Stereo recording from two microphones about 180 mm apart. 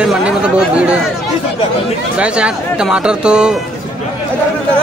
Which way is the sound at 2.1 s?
5° right (ahead or behind).